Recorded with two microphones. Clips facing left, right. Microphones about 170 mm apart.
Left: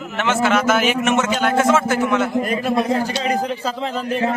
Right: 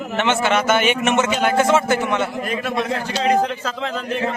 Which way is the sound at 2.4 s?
35° left (ahead or behind).